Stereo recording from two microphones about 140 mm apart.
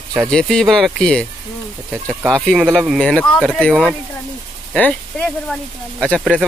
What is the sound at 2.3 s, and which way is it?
Speech, centre (ahead or behind).